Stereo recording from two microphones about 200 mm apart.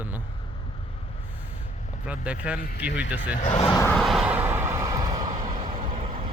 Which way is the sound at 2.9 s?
60° left (ahead or behind).